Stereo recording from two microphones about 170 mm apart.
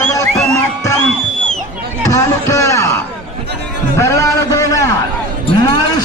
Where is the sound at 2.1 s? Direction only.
15° left (ahead or behind).